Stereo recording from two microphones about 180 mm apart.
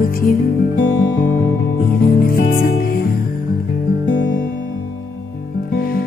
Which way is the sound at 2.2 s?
55° left (ahead or behind).